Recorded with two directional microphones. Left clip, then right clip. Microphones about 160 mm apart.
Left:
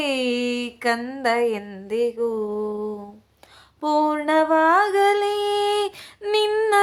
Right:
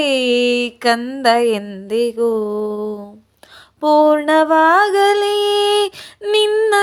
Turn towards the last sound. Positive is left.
turn(degrees=-20)  # may be behind; listen again after turning